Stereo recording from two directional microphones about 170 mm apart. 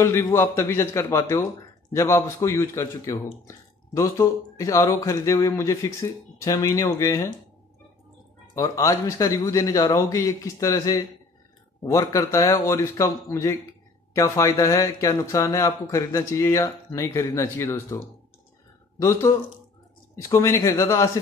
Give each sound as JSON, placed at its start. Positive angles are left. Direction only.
{"t": 0.0, "sound": "speech", "side_deg": 15}
{"t": 8.5, "sound": "a man's voice", "side_deg": 20}